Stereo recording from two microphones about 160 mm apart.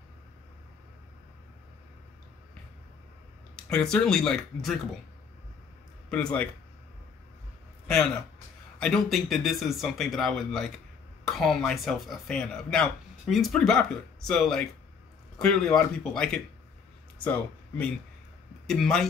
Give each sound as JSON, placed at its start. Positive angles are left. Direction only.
{"t": 3.5, "sound": "a man's voice", "side_deg": 5}
{"t": 6.0, "sound": "speech", "side_deg": 10}
{"t": 8.7, "sound": "a man's voice", "side_deg": 5}